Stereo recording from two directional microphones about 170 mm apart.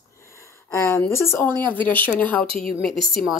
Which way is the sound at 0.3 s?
15° left (ahead or behind).